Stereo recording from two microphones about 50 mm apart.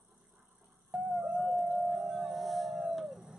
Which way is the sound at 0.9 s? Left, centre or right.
Centre.